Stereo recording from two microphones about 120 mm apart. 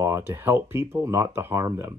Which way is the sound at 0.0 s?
20° right (ahead or behind).